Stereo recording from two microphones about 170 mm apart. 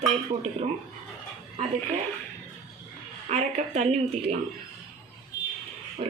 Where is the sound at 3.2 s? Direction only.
45° right (ahead or behind).